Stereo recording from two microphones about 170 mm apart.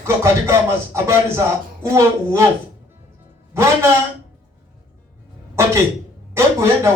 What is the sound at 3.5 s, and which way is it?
Speech, 15° right (ahead or behind).